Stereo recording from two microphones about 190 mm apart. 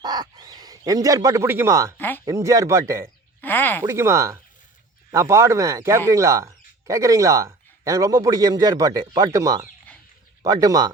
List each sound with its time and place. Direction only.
0.0 s bird: 20° right (ahead or behind)
2.0 s speech: 10° left (ahead or behind)
2.2 s speech: 15° right (ahead or behind)
3.4 s a sound: 10° left (ahead or behind)
3.8 s speech: 15° right (ahead or behind)